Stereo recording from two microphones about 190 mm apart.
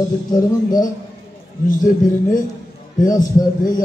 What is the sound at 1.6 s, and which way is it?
Speech, 45° left (ahead or behind).